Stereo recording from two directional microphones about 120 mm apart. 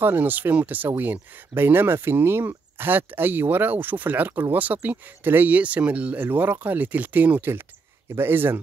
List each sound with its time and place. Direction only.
0.0 s speech: 15° right (ahead or behind)